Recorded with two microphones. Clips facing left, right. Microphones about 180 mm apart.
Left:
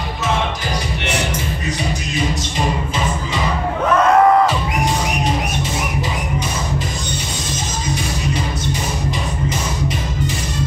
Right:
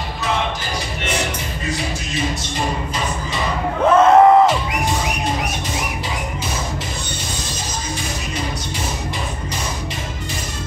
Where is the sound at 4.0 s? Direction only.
20° right (ahead or behind).